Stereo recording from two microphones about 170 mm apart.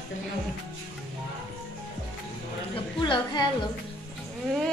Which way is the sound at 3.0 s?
25° left (ahead or behind).